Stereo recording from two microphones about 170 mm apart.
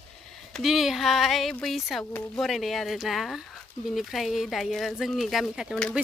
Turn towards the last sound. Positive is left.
turn(degrees=0)  # may be behind; listen again after turning